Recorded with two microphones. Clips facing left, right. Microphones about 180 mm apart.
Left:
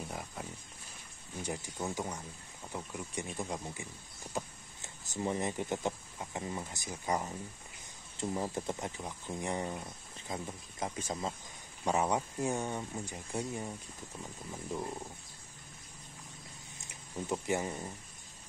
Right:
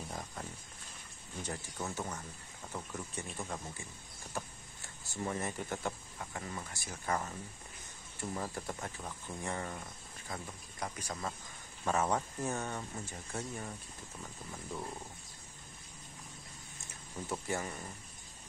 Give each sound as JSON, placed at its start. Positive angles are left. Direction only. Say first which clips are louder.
{"t": 0.1, "sound": "speech", "louder": "left 1 dB", "side_deg": 10}
{"t": 17.3, "sound": "speech", "louder": "left 4 dB", "side_deg": 20}